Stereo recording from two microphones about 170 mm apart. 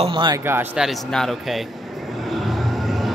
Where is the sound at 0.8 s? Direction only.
Centre (ahead or behind).